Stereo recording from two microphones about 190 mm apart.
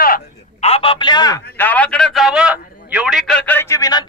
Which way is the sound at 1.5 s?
10° left (ahead or behind).